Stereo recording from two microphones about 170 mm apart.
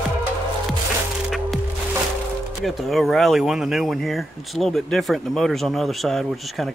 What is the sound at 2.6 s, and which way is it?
Speech, centre (ahead or behind).